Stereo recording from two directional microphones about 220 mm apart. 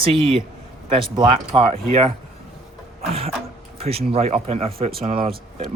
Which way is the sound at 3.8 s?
25° right (ahead or behind).